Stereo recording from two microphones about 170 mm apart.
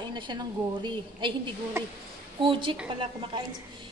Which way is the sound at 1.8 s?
15° right (ahead or behind).